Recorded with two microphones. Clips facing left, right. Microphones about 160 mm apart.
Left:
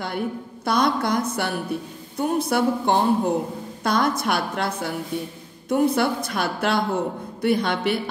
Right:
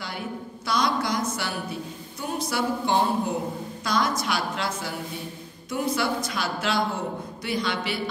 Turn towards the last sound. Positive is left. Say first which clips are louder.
# left 6 dB
turn(degrees=55)  # may be behind; listen again after turning